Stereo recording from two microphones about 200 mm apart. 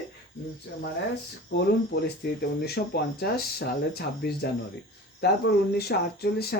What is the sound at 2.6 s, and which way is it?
Speech, 50° left (ahead or behind).